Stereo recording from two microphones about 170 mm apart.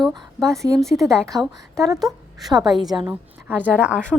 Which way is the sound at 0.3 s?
Centre (ahead or behind).